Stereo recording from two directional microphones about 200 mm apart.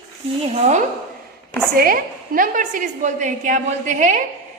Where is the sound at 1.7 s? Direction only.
45° right (ahead or behind).